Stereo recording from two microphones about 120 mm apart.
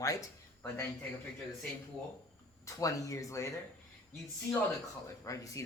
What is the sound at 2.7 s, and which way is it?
Speech, 25° left (ahead or behind).